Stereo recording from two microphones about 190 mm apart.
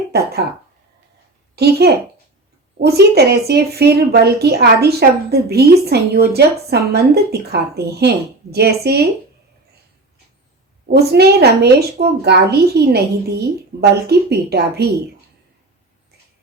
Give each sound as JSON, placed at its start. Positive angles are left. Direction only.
{"t": 0.1, "sound": "speech", "side_deg": -55}
{"t": 1.5, "sound": "speech", "side_deg": -55}
{"t": 10.8, "sound": "speech", "side_deg": -55}